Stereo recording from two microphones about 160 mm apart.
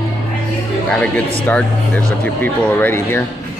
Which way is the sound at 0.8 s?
10° left (ahead or behind).